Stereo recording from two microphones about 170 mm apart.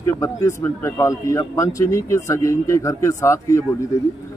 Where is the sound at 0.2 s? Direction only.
15° left (ahead or behind).